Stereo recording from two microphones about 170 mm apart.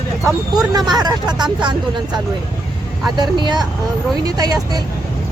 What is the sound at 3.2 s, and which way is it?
Speech, 25° right (ahead or behind).